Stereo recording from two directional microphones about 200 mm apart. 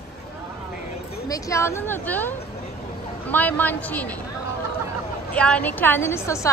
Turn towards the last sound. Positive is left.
turn(degrees=15)  # may be behind; listen again after turning